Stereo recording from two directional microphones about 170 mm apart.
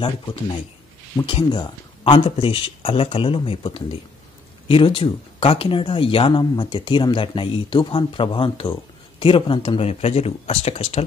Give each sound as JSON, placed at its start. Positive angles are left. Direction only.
{"t": 0.0, "sound": "speech", "side_deg": 25}